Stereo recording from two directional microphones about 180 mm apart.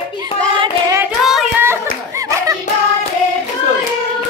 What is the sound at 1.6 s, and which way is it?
Hands, 15° right (ahead or behind).